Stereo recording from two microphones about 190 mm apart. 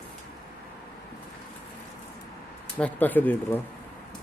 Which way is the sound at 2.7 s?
10° left (ahead or behind).